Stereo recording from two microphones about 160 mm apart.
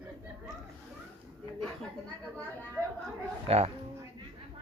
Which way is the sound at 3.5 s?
40° right (ahead or behind).